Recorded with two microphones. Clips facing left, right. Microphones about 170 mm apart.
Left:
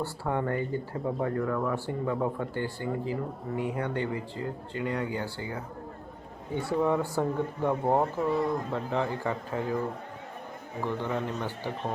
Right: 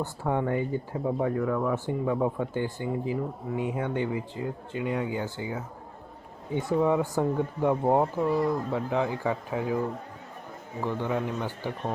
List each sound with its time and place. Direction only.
0.0 s speech: 15° right (ahead or behind)
1.7 s speech: 15° right (ahead or behind)
10.8 s speech: 15° right (ahead or behind)